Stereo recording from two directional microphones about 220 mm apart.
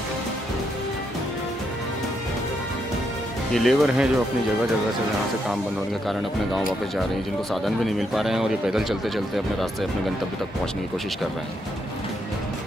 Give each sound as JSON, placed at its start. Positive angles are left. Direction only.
{"t": 3.5, "sound": "speech", "side_deg": 0}
{"t": 7.6, "sound": "speech", "side_deg": 0}